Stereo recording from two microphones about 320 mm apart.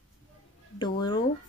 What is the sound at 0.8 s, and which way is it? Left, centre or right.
Speech, centre.